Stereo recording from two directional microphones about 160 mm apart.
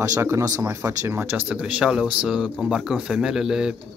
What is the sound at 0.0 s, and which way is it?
Speech, 20° right (ahead or behind).